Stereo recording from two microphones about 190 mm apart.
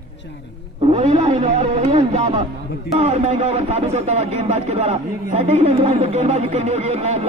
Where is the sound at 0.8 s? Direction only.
35° right (ahead or behind).